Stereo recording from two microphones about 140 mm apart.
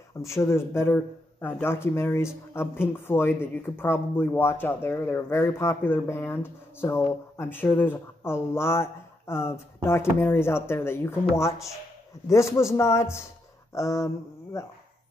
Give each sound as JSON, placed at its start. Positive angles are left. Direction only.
{"t": 0.3, "sound": "speech", "side_deg": 20}